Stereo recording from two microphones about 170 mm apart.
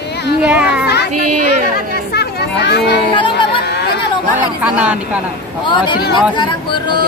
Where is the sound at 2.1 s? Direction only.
75° left (ahead or behind).